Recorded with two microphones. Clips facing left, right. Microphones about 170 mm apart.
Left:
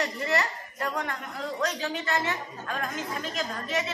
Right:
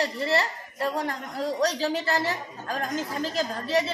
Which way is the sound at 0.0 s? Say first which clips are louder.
Right 2 dB; 30° right (ahead or behind).